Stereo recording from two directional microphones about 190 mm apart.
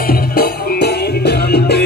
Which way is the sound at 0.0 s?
50° left (ahead or behind).